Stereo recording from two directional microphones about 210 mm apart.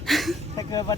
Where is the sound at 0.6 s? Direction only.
20° left (ahead or behind).